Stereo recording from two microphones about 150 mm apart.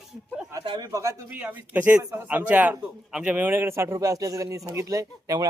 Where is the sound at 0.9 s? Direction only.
20° right (ahead or behind).